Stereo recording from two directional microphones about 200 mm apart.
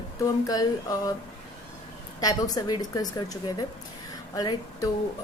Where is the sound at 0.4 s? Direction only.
20° left (ahead or behind).